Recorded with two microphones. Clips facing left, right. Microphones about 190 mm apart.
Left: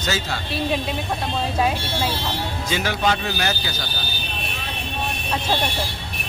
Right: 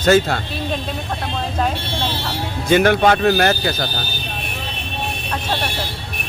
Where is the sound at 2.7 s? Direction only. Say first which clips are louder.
Right 9 dB; 60° right (ahead or behind).